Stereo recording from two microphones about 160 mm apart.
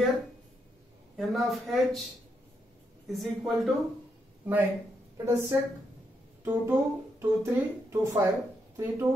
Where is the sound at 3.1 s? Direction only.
Centre (ahead or behind).